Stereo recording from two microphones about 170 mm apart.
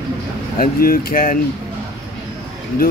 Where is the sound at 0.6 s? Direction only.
60° left (ahead or behind).